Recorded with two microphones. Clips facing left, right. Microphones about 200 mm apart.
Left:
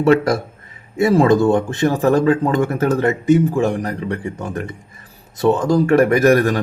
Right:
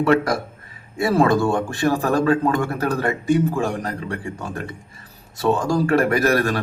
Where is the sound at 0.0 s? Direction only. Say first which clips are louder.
Left 4 dB; 25° left (ahead or behind).